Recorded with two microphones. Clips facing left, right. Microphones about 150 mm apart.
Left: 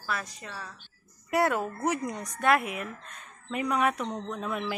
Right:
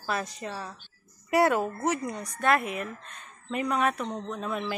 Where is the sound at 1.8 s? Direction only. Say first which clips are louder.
Right 1 dB; 15° left (ahead or behind).